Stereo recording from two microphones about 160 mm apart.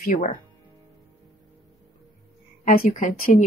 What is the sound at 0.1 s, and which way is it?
Speech, 55° left (ahead or behind).